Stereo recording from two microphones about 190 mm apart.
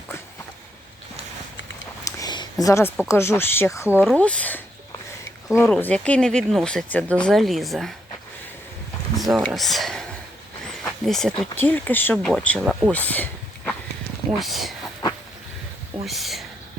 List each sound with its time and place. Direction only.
2.0 s a sound: 20° left (ahead or behind)
3.1 s speech: 15° left (ahead or behind)
3.8 s speech: 5° right (ahead or behind)
9.3 s speech: centre (ahead or behind)
10.7 s a sound: centre (ahead or behind)
11.5 s speech: 10° left (ahead or behind)
12.5 s speech: 5° right (ahead or behind)
12.9 s a sound: 10° left (ahead or behind)
14.3 s speech: centre (ahead or behind)
16.0 s speech: centre (ahead or behind)